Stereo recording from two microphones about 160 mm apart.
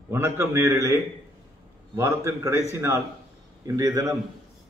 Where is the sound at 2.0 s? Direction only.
20° right (ahead or behind).